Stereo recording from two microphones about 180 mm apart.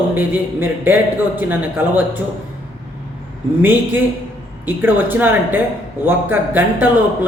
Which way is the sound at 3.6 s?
10° right (ahead or behind).